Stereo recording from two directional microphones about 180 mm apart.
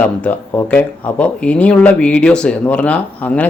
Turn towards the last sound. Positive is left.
turn(degrees=10)  # may be behind; listen again after turning